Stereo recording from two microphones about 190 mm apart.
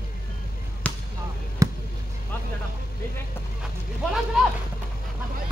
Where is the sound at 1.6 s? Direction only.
15° right (ahead or behind).